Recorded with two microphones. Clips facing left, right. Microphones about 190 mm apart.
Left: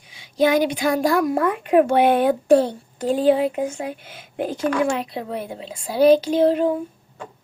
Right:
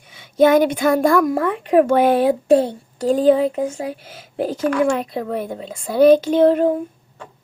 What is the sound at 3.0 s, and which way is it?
Speech, 40° right (ahead or behind).